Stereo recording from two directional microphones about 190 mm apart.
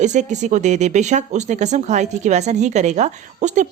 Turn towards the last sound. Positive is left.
turn(degrees=-40)  # may be behind; listen again after turning